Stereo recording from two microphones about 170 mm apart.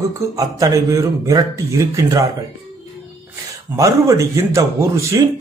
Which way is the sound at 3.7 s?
20° right (ahead or behind).